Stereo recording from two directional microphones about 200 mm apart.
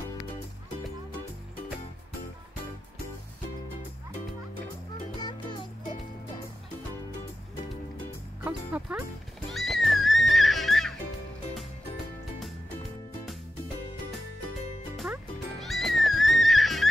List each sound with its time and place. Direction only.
5.2 s music: 20° left (ahead or behind)
8.5 s speech: 5° right (ahead or behind)
9.5 s music: centre (ahead or behind)
15.6 s music: centre (ahead or behind)